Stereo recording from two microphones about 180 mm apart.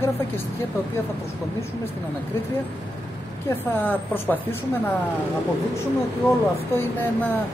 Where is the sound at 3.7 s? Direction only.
10° left (ahead or behind).